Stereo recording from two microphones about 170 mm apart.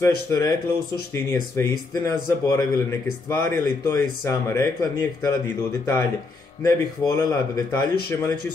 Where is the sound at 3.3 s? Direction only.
15° left (ahead or behind).